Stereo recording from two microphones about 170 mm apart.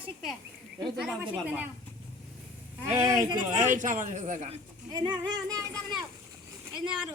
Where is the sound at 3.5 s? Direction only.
50° right (ahead or behind).